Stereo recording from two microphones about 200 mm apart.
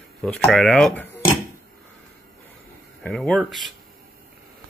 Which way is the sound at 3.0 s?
Centre (ahead or behind).